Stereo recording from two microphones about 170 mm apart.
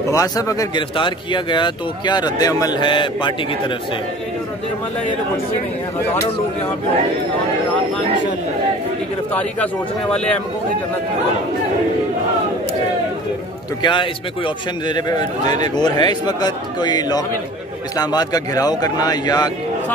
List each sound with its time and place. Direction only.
0.1 s speech: 20° left (ahead or behind)
9.3 s speech: 10° left (ahead or behind)
13.8 s speech: 30° left (ahead or behind)